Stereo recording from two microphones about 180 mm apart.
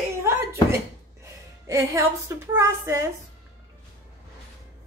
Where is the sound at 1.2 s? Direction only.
15° right (ahead or behind).